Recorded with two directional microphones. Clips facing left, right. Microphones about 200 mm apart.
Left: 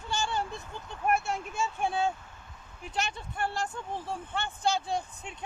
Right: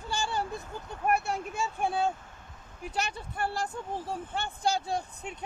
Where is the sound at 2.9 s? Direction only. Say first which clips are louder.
Even; 35° right (ahead or behind).